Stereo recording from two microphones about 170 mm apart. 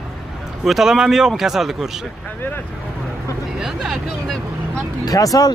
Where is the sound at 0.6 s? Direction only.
Centre (ahead or behind).